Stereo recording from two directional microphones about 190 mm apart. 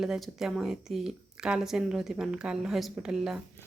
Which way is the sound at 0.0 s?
Centre (ahead or behind).